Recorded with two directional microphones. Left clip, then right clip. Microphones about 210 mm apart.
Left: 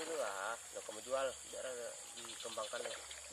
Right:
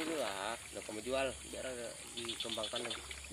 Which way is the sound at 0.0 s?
20° left (ahead or behind).